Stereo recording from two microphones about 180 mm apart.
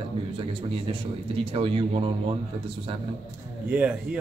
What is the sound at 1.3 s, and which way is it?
Speech, 30° right (ahead or behind).